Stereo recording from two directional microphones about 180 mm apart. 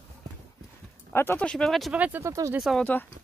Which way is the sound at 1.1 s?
10° left (ahead or behind).